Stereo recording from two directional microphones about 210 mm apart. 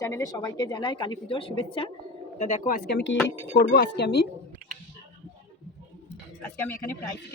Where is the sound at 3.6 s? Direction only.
55° left (ahead or behind).